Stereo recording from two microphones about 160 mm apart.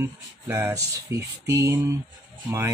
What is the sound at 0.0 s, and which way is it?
Speech, 15° right (ahead or behind).